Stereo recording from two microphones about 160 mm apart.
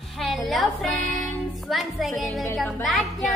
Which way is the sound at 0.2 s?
Centre (ahead or behind).